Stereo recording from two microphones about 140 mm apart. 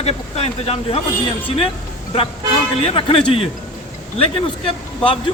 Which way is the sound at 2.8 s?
40° left (ahead or behind).